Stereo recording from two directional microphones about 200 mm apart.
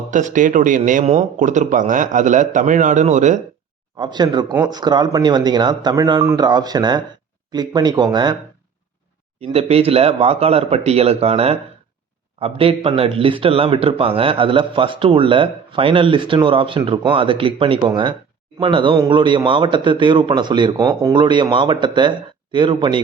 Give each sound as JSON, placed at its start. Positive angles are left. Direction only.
{"t": 0.1, "sound": "speech", "side_deg": -40}
{"t": 3.9, "sound": "speech", "side_deg": -20}
{"t": 9.4, "sound": "speech", "side_deg": -30}